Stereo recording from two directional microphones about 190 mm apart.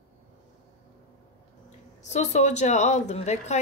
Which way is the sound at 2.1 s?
35° left (ahead or behind).